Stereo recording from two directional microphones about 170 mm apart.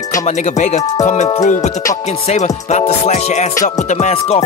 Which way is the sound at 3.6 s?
45° left (ahead or behind).